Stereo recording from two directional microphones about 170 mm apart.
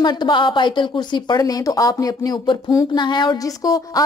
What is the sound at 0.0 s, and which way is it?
Speech, 25° left (ahead or behind).